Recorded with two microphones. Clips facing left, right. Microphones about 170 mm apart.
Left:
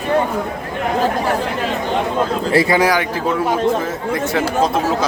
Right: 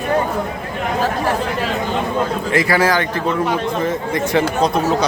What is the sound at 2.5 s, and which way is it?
Speech, 20° left (ahead or behind).